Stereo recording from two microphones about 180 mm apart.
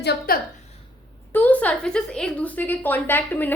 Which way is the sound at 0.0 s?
65° left (ahead or behind).